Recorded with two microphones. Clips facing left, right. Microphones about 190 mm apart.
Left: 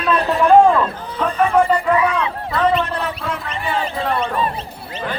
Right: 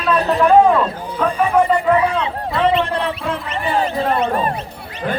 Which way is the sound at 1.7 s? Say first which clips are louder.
Right 1 dB; 25° right (ahead or behind).